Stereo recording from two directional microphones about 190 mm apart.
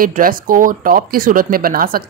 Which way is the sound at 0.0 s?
50° right (ahead or behind).